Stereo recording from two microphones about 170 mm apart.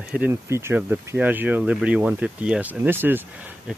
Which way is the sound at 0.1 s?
10° right (ahead or behind).